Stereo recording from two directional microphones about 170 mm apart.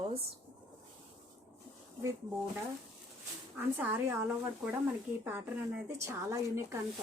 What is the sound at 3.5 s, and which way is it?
Speech, 15° right (ahead or behind).